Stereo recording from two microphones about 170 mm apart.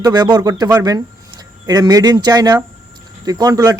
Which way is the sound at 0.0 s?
25° right (ahead or behind).